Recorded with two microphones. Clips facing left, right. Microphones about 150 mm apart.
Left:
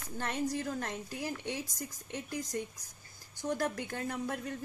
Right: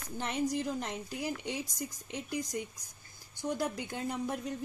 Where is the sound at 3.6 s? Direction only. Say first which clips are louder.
Even; 15° right (ahead or behind).